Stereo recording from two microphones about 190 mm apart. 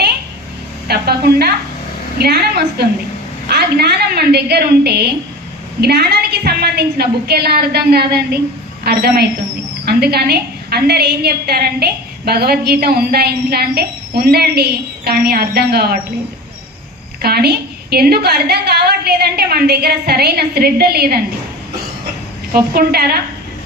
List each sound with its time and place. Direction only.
0.9 s a woman's voice: 55° right (ahead or behind)
17.2 s a woman's voice: 55° right (ahead or behind)
22.5 s a woman's voice: 50° right (ahead or behind)